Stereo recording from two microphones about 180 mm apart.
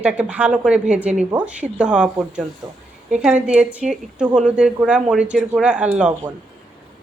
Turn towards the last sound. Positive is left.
turn(degrees=-5)  # may be behind; listen again after turning